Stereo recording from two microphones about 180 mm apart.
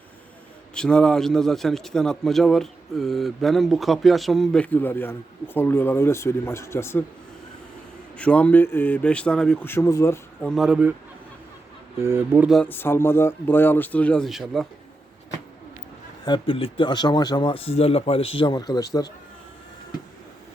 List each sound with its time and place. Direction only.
0.7 s a man's voice: 5° left (ahead or behind)
8.2 s speech: 5° left (ahead or behind)
10.4 s a man's voice: centre (ahead or behind)
11.9 s speech: 15° right (ahead or behind)
12.5 s speech: 5° left (ahead or behind)
16.2 s speech: 25° left (ahead or behind)